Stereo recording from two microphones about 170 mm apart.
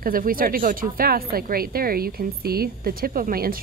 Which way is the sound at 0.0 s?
55° right (ahead or behind).